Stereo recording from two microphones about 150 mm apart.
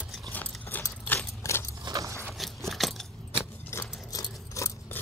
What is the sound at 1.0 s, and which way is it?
Keys jangling, 15° left (ahead or behind).